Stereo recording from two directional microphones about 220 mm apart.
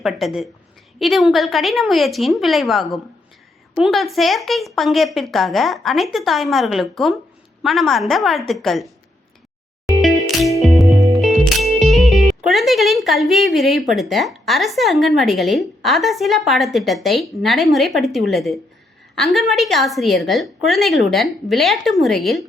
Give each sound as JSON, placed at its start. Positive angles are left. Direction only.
{"t": 0.0, "sound": "speech", "side_deg": 0}
{"t": 9.8, "sound": "music", "side_deg": 0}
{"t": 11.2, "sound": "speech", "side_deg": 0}